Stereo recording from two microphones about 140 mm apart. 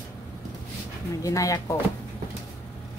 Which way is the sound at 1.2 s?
25° left (ahead or behind).